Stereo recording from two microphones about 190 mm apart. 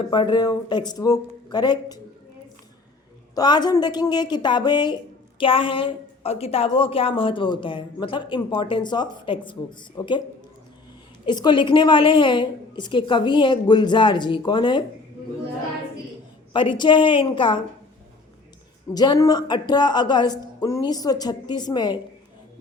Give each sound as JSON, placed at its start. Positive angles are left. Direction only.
{"t": 0.1, "sound": "a woman's voice", "side_deg": 25}
{"t": 3.3, "sound": "a woman's voice", "side_deg": 20}
{"t": 11.3, "sound": "a woman's voice", "side_deg": 25}
{"t": 16.5, "sound": "a woman's voice", "side_deg": 25}
{"t": 18.9, "sound": "a woman's voice", "side_deg": 20}